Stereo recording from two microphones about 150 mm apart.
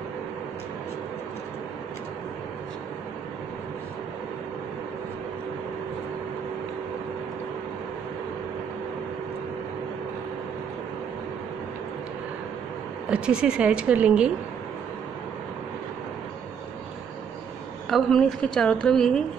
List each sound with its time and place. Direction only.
13.1 s a woman's voice: 5° right (ahead or behind)
17.8 s a woman's voice: centre (ahead or behind)